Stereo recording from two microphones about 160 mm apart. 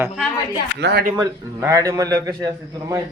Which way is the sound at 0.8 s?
85° right.